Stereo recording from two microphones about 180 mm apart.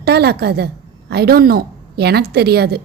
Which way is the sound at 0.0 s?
60° right (ahead or behind).